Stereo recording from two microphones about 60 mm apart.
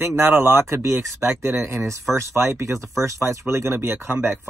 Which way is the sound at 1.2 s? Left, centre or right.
Right.